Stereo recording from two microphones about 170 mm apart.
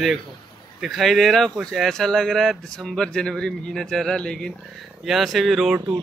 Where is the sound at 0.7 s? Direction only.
Centre (ahead or behind).